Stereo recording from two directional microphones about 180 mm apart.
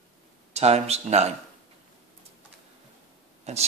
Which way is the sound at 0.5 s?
35° right (ahead or behind).